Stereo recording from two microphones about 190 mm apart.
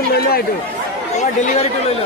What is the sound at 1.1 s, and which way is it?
Speech, 35° left (ahead or behind).